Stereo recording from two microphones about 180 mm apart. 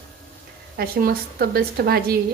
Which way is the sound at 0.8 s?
55° right (ahead or behind).